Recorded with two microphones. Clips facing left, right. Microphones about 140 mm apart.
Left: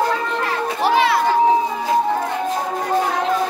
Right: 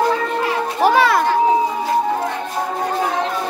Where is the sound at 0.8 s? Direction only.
45° right (ahead or behind).